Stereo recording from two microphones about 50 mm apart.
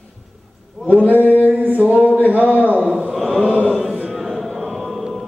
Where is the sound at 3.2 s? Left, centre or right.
Centre.